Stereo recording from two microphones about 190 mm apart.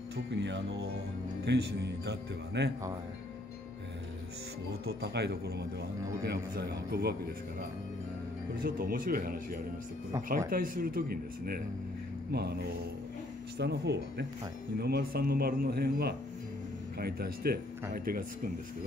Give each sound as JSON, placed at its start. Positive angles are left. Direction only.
{"t": 0.1, "sound": "a man's voice", "side_deg": -70}
{"t": 4.8, "sound": "a man's voice", "side_deg": -60}
{"t": 8.6, "sound": "a man's voice", "side_deg": -50}